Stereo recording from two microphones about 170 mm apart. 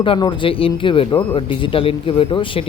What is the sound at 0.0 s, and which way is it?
A man's voice, 30° left (ahead or behind).